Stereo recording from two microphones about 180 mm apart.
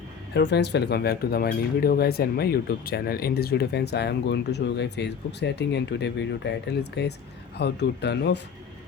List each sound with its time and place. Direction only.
0.3 s speech: 70° left (ahead or behind)